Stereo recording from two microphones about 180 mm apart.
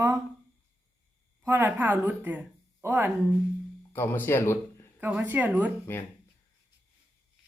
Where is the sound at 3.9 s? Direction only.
10° left (ahead or behind).